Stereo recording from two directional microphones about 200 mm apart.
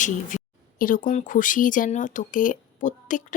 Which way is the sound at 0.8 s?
45° left (ahead or behind).